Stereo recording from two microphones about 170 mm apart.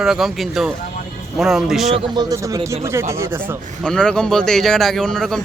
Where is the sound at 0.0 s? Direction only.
Centre (ahead or behind).